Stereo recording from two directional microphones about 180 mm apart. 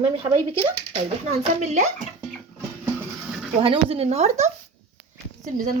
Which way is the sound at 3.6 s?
30° right (ahead or behind).